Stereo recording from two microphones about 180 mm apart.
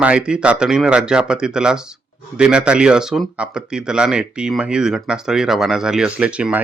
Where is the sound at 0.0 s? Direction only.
5° right (ahead or behind).